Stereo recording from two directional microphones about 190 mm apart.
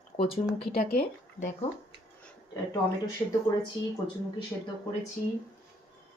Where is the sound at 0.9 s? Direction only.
50° left (ahead or behind).